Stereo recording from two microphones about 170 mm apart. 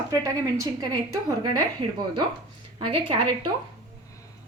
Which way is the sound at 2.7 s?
30° right (ahead or behind).